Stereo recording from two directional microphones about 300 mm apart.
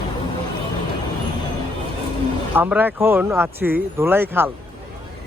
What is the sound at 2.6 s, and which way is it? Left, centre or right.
Speech, centre.